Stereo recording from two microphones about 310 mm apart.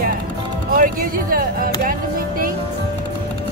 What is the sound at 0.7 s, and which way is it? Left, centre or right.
Speech, right.